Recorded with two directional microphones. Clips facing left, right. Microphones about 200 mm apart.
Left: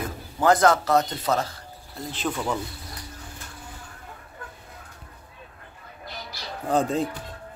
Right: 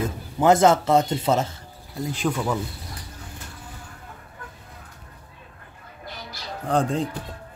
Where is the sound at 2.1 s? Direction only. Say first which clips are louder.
Right 3 dB; 10° right (ahead or behind).